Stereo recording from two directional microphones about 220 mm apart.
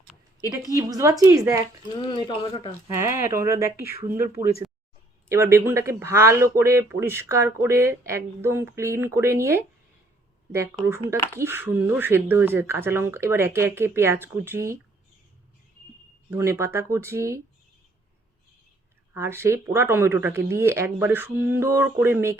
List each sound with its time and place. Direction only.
0.8 s speech: 15° right (ahead or behind)
2.0 s speech: 20° left (ahead or behind)
2.8 s speech: 15° right (ahead or behind)
16.3 s speech: 10° right (ahead or behind)
19.1 s speech: 10° right (ahead or behind)